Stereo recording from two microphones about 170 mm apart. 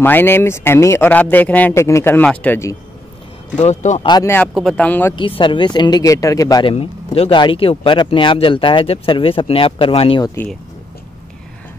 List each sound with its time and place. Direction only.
0.0 s speech: 15° left (ahead or behind)
3.5 s speech: 45° left (ahead or behind)
4.0 s speech: 25° left (ahead or behind)
4.7 s speech: 10° left (ahead or behind)
5.1 s speech: 30° left (ahead or behind)
6.7 s speech: 35° left (ahead or behind)
10.2 s speech: 15° left (ahead or behind)